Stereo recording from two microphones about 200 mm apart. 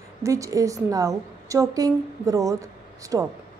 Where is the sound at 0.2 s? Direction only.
15° right (ahead or behind).